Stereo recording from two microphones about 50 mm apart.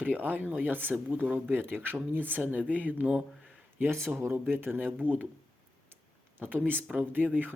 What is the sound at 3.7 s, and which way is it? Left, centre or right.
Speech, right.